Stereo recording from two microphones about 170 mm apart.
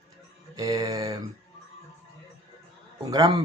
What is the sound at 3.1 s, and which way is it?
Speech, 20° right (ahead or behind).